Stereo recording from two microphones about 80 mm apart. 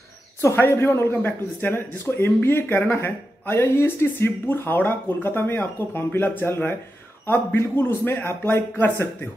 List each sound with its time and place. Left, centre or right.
0.6 s a man's voice: left